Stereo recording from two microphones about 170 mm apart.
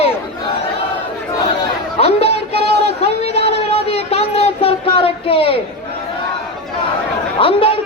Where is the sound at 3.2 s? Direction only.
35° left (ahead or behind).